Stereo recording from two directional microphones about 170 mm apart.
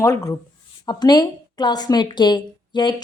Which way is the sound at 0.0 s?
20° left (ahead or behind).